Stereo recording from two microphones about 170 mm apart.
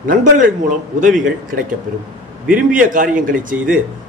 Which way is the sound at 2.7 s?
55° right (ahead or behind).